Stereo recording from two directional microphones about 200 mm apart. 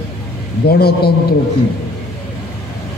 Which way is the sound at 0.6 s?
50° left (ahead or behind).